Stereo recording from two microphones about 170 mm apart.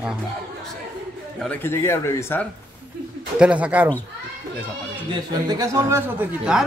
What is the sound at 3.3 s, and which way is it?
Speech, 5° right (ahead or behind).